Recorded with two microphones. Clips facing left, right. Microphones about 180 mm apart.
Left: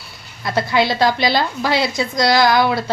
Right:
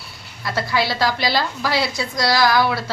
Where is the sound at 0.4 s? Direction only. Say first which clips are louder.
Left 4 dB; 20° left (ahead or behind).